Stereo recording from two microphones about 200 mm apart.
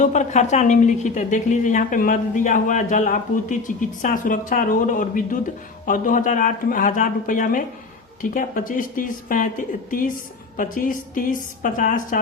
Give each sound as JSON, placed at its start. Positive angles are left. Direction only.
{"t": 0.0, "sound": "a woman's voice", "side_deg": 35}
{"t": 10.6, "sound": "a woman's voice", "side_deg": 40}